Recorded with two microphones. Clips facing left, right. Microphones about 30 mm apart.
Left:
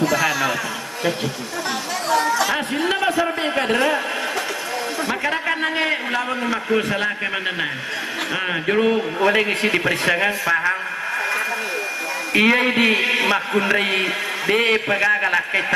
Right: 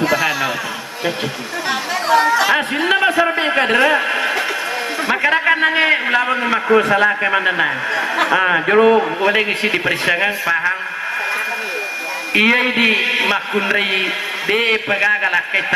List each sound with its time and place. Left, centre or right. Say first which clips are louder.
0.0 s a sound: right 2 dB; centre
1.7 s a man's voice: right 6 dB; right
12.4 s a man's voice: right 2 dB; centre